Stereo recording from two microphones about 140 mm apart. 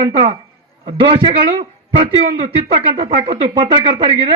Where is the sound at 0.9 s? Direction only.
40° right (ahead or behind).